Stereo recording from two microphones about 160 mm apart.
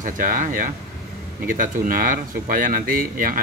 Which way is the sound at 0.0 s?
55° right (ahead or behind).